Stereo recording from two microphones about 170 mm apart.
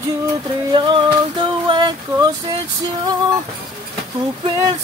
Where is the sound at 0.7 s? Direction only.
30° right (ahead or behind).